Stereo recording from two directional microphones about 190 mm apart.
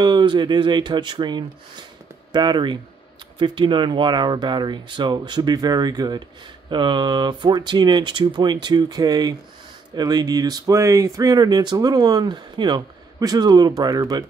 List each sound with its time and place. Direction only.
0.0 s speech: 25° right (ahead or behind)